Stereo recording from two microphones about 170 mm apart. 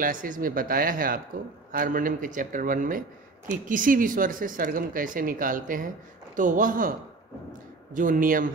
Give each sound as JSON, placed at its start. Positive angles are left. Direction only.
{"t": 0.0, "sound": "speech", "side_deg": -50}
{"t": 7.9, "sound": "speech", "side_deg": -50}